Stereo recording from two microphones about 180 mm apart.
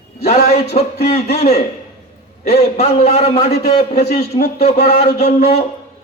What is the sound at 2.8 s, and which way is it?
A man's voice, 40° left (ahead or behind).